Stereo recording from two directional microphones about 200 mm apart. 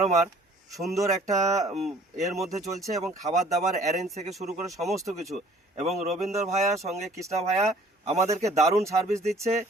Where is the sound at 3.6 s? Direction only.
35° right (ahead or behind).